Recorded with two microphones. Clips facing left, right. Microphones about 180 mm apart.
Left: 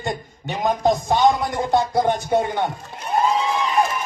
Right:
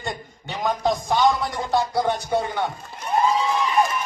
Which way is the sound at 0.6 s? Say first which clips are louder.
Left 3 dB; 25° left (ahead or behind).